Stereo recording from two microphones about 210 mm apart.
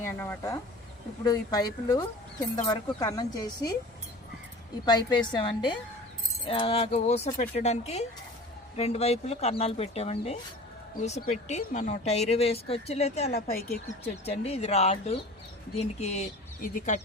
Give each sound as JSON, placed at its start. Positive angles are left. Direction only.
{"t": 0.2, "sound": "speech", "side_deg": 10}
{"t": 4.9, "sound": "speech", "side_deg": 20}